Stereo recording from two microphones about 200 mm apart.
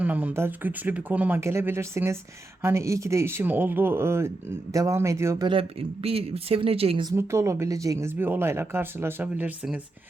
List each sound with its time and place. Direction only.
0.0 s speech: 5° right (ahead or behind)
5.5 s speech: 30° right (ahead or behind)
7.2 s speech: 15° right (ahead or behind)